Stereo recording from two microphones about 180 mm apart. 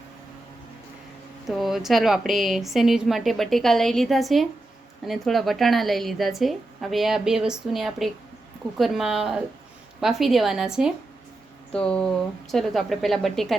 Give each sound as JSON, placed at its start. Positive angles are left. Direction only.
{"t": 1.5, "sound": "a woman's voice", "side_deg": 0}